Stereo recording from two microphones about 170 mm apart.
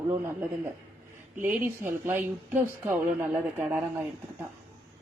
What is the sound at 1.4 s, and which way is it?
Speech, 10° right (ahead or behind).